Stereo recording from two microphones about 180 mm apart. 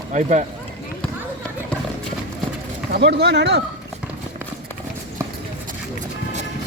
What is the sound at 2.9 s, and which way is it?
Speech, 65° right (ahead or behind).